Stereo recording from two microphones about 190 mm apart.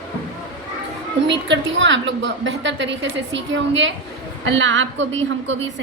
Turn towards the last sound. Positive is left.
turn(degrees=-75)  # may be behind; listen again after turning